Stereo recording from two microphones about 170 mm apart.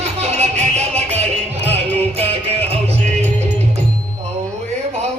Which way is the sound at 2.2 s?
35° right (ahead or behind).